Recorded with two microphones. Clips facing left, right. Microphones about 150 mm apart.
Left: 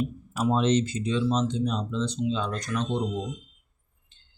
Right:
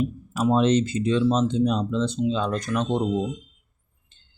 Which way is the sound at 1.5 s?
90° right.